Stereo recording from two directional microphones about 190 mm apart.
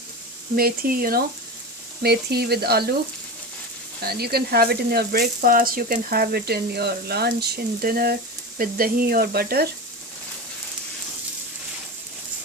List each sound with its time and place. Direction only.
0.5 s speech: 50° right (ahead or behind)
4.0 s speech: 55° right (ahead or behind)